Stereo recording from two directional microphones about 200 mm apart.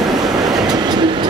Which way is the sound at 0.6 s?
20° right (ahead or behind).